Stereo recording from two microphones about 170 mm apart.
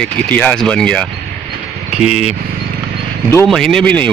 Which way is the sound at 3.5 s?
5° left (ahead or behind).